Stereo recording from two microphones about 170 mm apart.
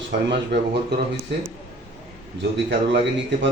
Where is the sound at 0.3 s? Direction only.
85° right.